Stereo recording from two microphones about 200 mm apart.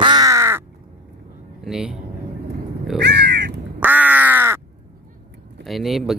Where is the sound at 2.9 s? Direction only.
60° right (ahead or behind).